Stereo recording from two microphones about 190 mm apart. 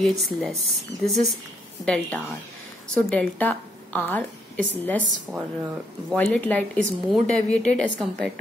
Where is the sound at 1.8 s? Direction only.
5° left (ahead or behind).